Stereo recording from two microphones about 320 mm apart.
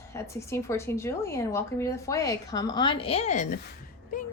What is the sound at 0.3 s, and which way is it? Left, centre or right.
Speech, centre.